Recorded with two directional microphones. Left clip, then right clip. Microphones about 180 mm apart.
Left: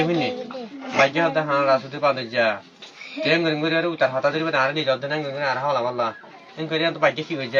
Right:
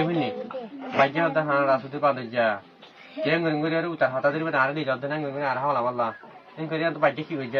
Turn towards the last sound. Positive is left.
turn(degrees=25)  # may be behind; listen again after turning